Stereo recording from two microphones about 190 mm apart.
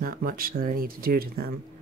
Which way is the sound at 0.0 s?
50° right (ahead or behind).